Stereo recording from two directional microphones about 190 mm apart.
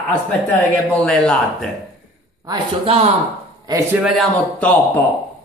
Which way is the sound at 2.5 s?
30° right (ahead or behind).